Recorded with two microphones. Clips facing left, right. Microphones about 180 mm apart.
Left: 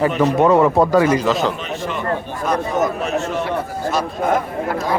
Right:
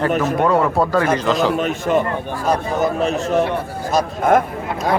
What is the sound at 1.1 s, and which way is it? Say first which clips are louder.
Speech: even; 5° left (ahead or behind).